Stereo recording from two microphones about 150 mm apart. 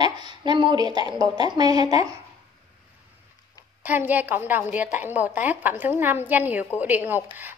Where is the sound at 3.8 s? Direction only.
10° right (ahead or behind).